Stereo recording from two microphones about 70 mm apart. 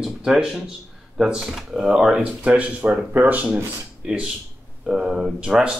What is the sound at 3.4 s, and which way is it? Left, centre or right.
Speech, centre.